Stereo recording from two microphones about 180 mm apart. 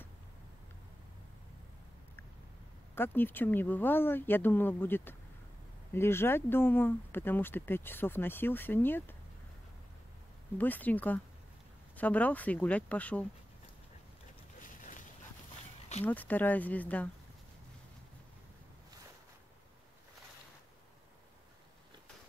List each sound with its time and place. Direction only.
2.9 s speech: 10° left (ahead or behind)
10.6 s speech: 10° left (ahead or behind)
14.6 s boat: 45° left (ahead or behind)
16.0 s speech: 10° left (ahead or behind)